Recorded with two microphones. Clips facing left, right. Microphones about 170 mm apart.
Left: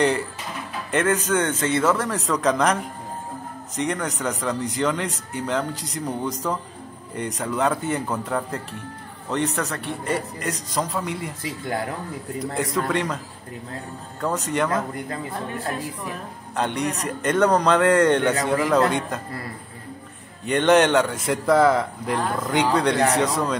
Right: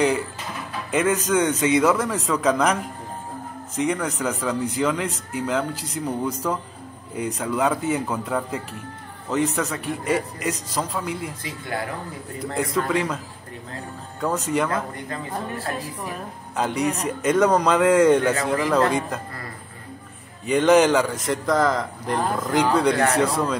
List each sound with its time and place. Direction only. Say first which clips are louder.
0.9 s speech: right 1 dB; 10° right (ahead or behind)
2.0 s a man's voice: right 1 dB; centre (ahead or behind)
12.4 s a man's voice: right 1 dB; centre (ahead or behind)
14.2 s a man's voice: right 1 dB; centre (ahead or behind)
16.5 s a man's voice: right 1 dB; 5° right (ahead or behind)
20.4 s a man's voice: right 1 dB; centre (ahead or behind)